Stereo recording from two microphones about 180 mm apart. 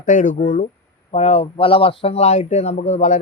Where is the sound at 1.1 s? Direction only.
35° left (ahead or behind).